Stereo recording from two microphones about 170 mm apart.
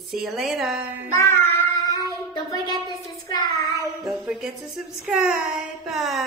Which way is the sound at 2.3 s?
25° left (ahead or behind).